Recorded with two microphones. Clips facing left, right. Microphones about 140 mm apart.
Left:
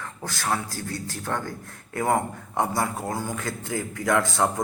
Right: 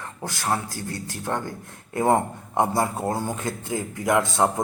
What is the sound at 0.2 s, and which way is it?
A man's voice, 20° right (ahead or behind).